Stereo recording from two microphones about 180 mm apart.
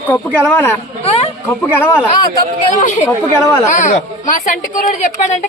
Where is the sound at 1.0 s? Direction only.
35° left (ahead or behind).